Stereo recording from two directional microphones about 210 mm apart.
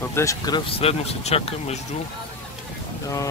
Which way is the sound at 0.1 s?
15° left (ahead or behind).